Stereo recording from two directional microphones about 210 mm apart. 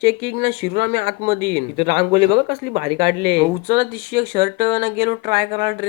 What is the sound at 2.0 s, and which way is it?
Speech, 25° right (ahead or behind).